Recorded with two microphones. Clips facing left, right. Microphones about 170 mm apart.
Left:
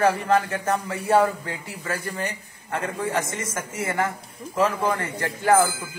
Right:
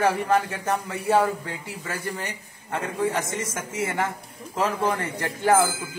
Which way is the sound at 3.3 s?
20° right (ahead or behind).